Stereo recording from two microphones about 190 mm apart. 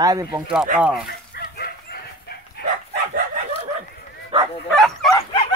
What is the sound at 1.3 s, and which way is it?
Chicken, 55° left (ahead or behind).